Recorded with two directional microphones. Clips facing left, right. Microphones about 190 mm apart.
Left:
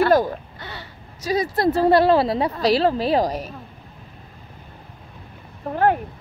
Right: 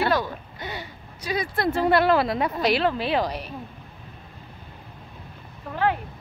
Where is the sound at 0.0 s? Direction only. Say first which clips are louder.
Left 7 dB; 45° left (ahead or behind).